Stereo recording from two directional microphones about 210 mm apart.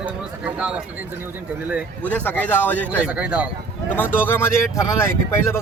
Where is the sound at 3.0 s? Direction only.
5° right (ahead or behind).